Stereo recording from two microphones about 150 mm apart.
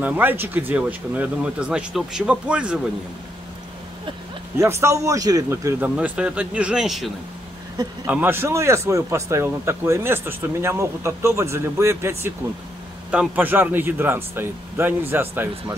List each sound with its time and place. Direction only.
0.0 s speech: 10° right (ahead or behind)
4.6 s speech: 20° right (ahead or behind)
5.9 s speech: 10° right (ahead or behind)
8.1 s speech: 15° right (ahead or behind)